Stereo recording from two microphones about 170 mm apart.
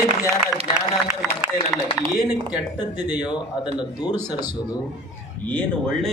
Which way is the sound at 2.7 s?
25° left (ahead or behind).